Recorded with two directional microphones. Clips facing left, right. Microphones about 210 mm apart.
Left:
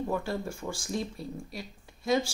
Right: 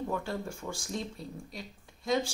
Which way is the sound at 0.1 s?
10° left (ahead or behind).